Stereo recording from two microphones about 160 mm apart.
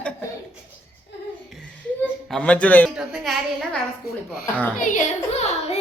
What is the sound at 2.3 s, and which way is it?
Speech, 5° left (ahead or behind).